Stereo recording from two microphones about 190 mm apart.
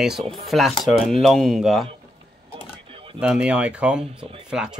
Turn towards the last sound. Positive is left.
turn(degrees=-5)  # may be behind; listen again after turning